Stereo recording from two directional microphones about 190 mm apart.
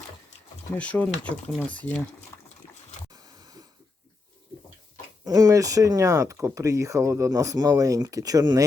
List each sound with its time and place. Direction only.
0.7 s speech: 10° left (ahead or behind)
3.1 s a sound: 20° right (ahead or behind)
5.2 s speech: 20° right (ahead or behind)